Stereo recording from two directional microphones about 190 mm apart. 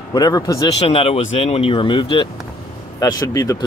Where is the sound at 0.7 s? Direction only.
30° left (ahead or behind).